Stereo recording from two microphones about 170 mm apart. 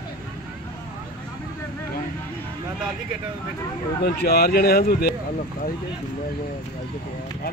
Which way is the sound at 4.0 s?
65° left (ahead or behind).